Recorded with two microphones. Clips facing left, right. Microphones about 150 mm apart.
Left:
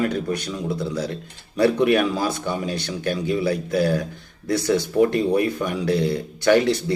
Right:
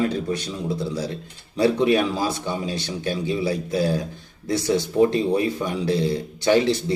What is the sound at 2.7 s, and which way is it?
Speech, 60° left (ahead or behind).